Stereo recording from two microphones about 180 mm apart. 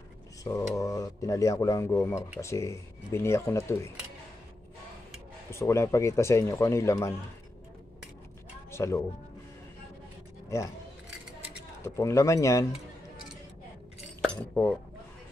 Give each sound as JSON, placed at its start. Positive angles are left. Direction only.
{"t": 0.4, "sound": "speech", "side_deg": 20}
{"t": 5.5, "sound": "speech", "side_deg": 15}
{"t": 8.7, "sound": "speech", "side_deg": 15}
{"t": 11.8, "sound": "speech", "side_deg": 15}
{"t": 14.2, "sound": "speech", "side_deg": 5}